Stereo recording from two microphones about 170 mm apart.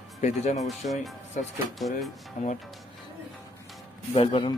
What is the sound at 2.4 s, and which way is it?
Speech, 50° left (ahead or behind).